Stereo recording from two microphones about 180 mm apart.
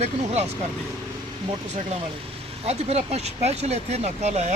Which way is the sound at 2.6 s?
35° right (ahead or behind).